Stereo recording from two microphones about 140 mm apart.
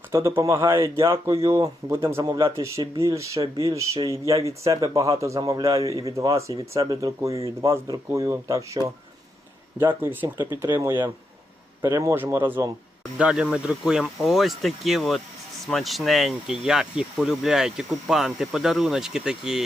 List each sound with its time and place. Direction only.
0.1 s speech: 20° right (ahead or behind); by 19.6 s 5° right (ahead or behind)